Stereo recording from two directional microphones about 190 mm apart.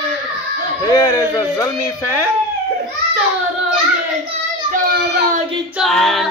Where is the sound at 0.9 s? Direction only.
15° left (ahead or behind).